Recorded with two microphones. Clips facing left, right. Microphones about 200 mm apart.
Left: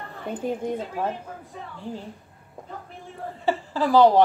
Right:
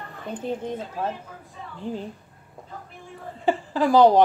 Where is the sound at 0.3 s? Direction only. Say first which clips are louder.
Left 2 dB; 10° left (ahead or behind).